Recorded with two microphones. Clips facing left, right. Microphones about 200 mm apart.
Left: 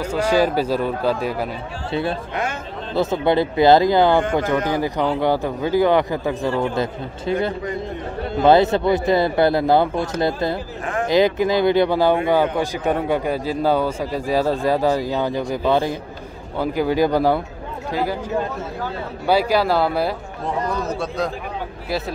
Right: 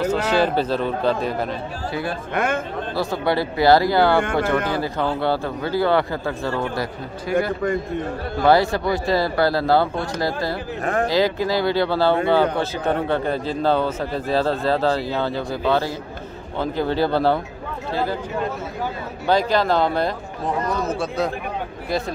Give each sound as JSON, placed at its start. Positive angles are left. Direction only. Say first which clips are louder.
{"t": 0.0, "sound": "speech", "louder": "left 1 dB", "side_deg": 10}
{"t": 1.9, "sound": "speech", "louder": "left 4 dB", "side_deg": 25}
{"t": 2.3, "sound": "a man's voice", "louder": "right 4 dB", "side_deg": -55}
{"t": 2.9, "sound": "speech", "louder": "left 4 dB", "side_deg": 20}
{"t": 8.4, "sound": "speech", "louder": "left 3 dB", "side_deg": 20}
{"t": 19.2, "sound": "a man's voice", "louder": "left 1 dB", "side_deg": 10}